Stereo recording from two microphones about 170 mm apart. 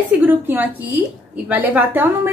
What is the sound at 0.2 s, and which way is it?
A woman's voice, 10° right (ahead or behind).